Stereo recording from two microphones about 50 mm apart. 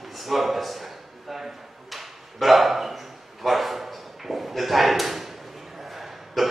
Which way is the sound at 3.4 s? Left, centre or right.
Centre.